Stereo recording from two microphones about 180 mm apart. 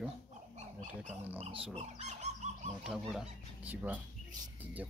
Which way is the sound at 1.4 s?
30° right (ahead or behind).